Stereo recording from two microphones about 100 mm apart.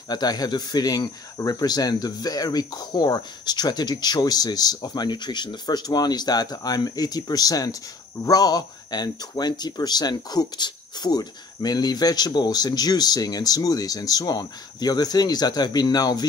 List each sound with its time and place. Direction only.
0.1 s speech: 45° left (ahead or behind)